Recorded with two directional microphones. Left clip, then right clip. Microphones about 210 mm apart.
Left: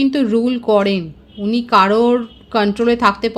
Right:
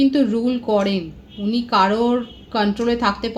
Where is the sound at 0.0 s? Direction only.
55° left (ahead or behind).